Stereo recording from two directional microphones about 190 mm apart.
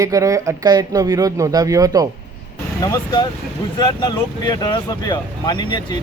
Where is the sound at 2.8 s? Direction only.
20° left (ahead or behind).